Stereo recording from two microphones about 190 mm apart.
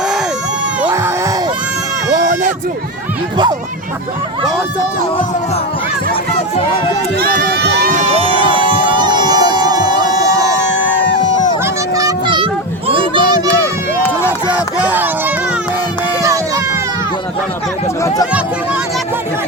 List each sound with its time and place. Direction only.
0.8 s screaming: 10° right (ahead or behind)
7.2 s speech: 50° right (ahead or behind)
7.9 s crowd: 30° right (ahead or behind)
11.6 s a sound: 15° right (ahead or behind)
14.3 s crowd: 5° right (ahead or behind)